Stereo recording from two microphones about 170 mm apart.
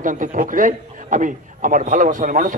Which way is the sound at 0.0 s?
50° right (ahead or behind).